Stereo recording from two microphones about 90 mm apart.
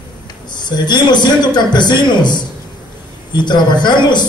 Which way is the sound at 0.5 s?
55° left (ahead or behind).